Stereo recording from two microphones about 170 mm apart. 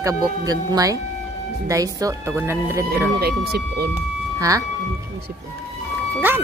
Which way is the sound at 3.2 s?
65° right (ahead or behind).